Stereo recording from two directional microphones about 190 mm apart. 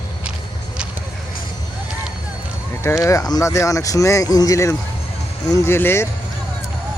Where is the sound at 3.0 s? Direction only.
20° left (ahead or behind).